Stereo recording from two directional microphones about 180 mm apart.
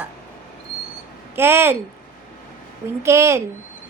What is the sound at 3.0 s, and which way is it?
Speech, 15° right (ahead or behind).